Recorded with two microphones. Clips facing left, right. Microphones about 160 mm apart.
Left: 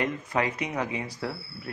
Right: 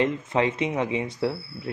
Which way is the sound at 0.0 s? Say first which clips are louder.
Right 5 dB; 25° right (ahead or behind).